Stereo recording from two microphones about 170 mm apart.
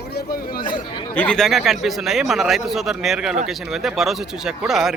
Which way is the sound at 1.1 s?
5° left (ahead or behind).